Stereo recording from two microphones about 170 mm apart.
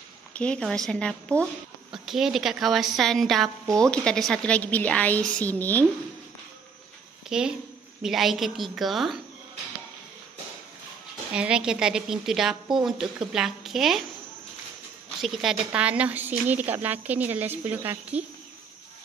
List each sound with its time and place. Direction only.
0.3 s a woman's voice: 5° left (ahead or behind)
7.2 s a woman's voice: 5° right (ahead or behind)
11.3 s a woman's voice: 5° right (ahead or behind)
15.2 s a woman's voice: centre (ahead or behind)